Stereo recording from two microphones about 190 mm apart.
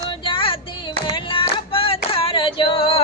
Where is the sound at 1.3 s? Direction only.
30° left (ahead or behind).